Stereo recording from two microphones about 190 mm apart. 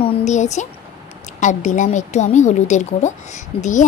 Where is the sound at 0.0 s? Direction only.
35° left (ahead or behind).